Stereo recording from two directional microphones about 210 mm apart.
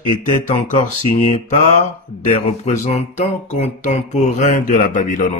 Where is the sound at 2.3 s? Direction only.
30° left (ahead or behind).